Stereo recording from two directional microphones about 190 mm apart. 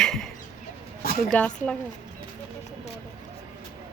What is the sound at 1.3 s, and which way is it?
Speech, 5° left (ahead or behind).